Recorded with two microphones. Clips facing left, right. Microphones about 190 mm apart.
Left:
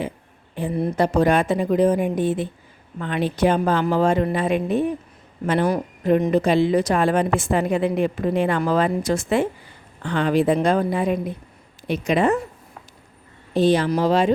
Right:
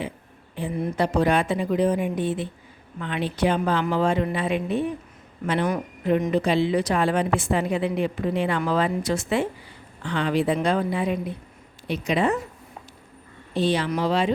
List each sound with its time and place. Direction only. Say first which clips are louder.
0.5 s a woman's voice: left 4 dB; 45° left (ahead or behind)
13.5 s speech: left 5 dB; 45° left (ahead or behind)